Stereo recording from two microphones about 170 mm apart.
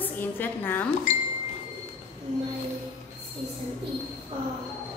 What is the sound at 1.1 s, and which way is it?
Speech, 45° left (ahead or behind).